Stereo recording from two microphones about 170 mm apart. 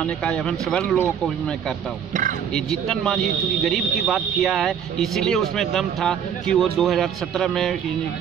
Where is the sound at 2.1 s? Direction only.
50° right (ahead or behind).